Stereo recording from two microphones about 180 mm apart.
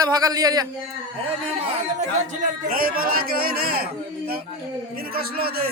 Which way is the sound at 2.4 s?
50° right (ahead or behind).